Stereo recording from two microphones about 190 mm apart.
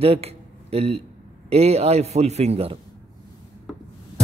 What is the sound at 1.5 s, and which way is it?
A man's voice, 35° right (ahead or behind).